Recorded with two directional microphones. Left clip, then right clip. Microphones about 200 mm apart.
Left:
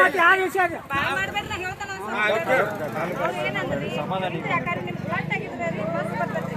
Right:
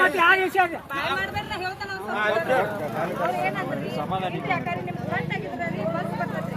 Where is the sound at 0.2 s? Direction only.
10° right (ahead or behind).